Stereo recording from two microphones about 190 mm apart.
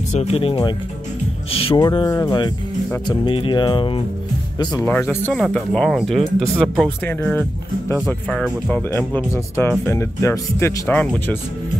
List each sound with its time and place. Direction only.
0.1 s speech: 35° left (ahead or behind)
4.6 s speech: 15° left (ahead or behind)